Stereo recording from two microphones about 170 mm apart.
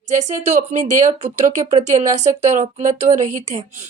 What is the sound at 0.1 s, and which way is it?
Speech, 45° right (ahead or behind).